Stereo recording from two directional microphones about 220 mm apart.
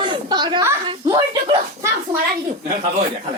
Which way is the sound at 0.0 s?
20° right (ahead or behind).